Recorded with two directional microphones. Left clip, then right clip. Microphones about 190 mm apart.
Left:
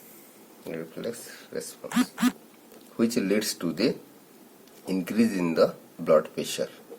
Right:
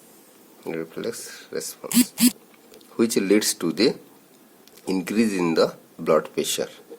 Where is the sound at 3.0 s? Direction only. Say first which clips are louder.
Right 6 dB; 50° right (ahead or behind).